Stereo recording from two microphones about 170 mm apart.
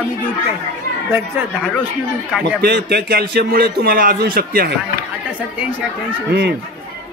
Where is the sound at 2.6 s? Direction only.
70° right (ahead or behind).